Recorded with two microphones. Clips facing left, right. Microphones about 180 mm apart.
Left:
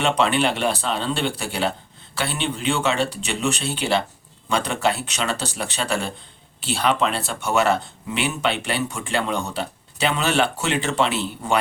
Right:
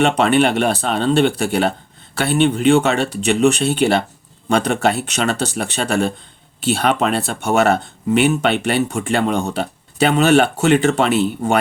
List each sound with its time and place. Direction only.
0.0 s speech: 50° right (ahead or behind)